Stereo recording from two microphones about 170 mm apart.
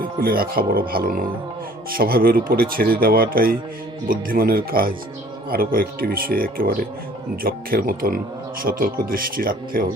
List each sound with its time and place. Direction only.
0.0 s speech: 60° right (ahead or behind)